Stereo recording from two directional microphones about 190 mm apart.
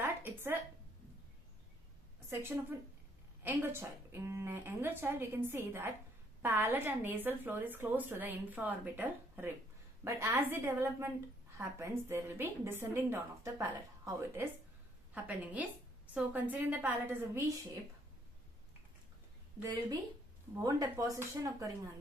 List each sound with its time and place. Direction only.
0.0 s a sound: 10° right (ahead or behind)
2.2 s a woman's voice: 10° right (ahead or behind)
19.6 s a woman's voice: 20° right (ahead or behind)